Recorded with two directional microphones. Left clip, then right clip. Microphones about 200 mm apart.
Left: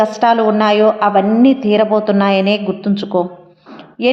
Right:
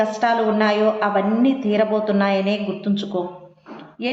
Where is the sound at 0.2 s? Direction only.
30° left (ahead or behind).